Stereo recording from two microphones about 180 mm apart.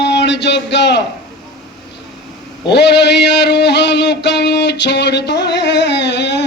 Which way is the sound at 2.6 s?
70° left (ahead or behind).